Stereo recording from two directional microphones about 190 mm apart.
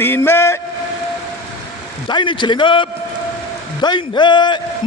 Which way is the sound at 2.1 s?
25° left (ahead or behind).